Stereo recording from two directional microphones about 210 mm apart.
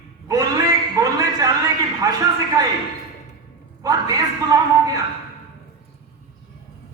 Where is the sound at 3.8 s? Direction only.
15° right (ahead or behind).